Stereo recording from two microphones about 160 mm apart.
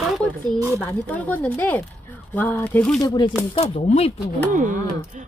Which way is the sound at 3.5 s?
40° left (ahead or behind).